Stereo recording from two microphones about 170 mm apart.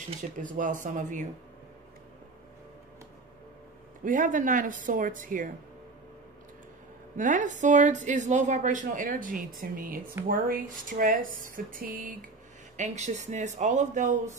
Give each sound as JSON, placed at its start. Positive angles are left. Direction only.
{"t": 0.4, "sound": "speech", "side_deg": -50}
{"t": 4.0, "sound": "speech", "side_deg": -50}
{"t": 7.2, "sound": "speech", "side_deg": -50}
{"t": 12.7, "sound": "speech", "side_deg": -45}